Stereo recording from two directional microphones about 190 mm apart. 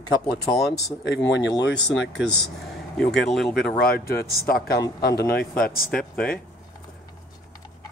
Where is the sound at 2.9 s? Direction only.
5° left (ahead or behind).